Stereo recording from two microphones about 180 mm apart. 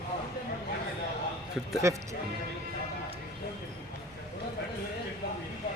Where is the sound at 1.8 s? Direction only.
15° right (ahead or behind).